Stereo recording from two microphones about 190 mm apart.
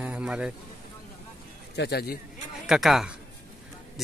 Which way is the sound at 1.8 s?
60° left (ahead or behind).